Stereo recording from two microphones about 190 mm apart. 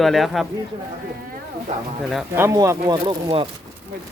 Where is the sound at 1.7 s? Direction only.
35° right (ahead or behind).